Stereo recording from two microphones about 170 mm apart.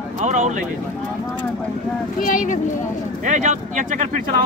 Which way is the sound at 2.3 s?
50° left (ahead or behind).